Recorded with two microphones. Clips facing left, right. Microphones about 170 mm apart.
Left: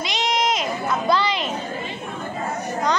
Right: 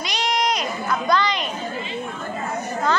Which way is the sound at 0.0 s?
20° left (ahead or behind).